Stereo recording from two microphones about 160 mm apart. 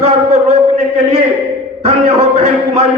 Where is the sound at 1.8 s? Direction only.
40° right (ahead or behind).